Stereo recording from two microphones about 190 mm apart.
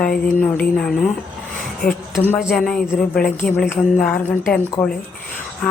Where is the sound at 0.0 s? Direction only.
50° left (ahead or behind).